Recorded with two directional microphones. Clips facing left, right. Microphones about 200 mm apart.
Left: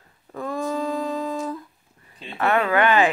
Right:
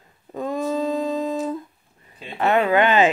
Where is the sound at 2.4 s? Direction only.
20° right (ahead or behind).